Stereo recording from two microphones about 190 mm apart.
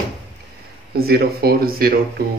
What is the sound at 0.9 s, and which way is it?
Speech, 55° right (ahead or behind).